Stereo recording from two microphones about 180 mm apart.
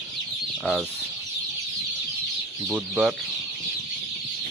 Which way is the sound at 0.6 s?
Centre (ahead or behind).